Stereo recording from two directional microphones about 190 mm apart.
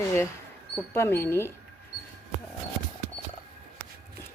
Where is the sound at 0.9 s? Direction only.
10° left (ahead or behind).